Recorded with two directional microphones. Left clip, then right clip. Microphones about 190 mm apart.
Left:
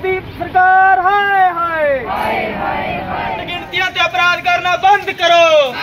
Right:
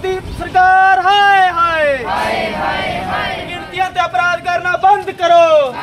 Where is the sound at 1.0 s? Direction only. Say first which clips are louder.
Right 2 dB; 40° left (ahead or behind).